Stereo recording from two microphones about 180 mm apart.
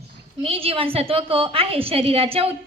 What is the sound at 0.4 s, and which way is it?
A woman's voice, 30° right (ahead or behind).